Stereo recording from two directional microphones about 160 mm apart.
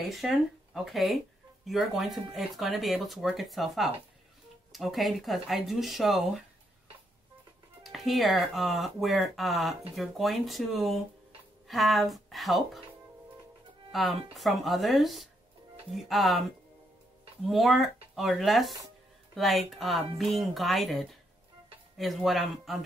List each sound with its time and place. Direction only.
0.1 s speech: centre (ahead or behind)
7.8 s speech: centre (ahead or behind)
13.9 s speech: centre (ahead or behind)
17.5 s speech: centre (ahead or behind)